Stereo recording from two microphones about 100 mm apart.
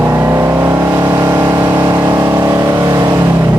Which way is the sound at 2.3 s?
35° right (ahead or behind).